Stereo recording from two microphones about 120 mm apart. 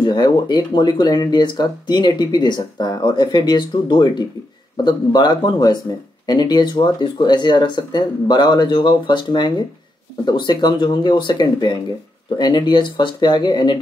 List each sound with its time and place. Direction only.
0.0 s speech: 40° left (ahead or behind)